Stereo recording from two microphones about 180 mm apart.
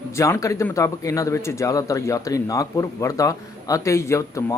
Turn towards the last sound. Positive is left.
turn(degrees=15)  # may be behind; listen again after turning